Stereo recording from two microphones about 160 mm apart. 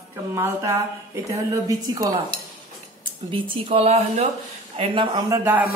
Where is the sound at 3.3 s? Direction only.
35° right (ahead or behind).